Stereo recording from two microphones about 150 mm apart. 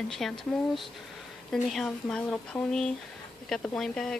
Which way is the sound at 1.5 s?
Centre (ahead or behind).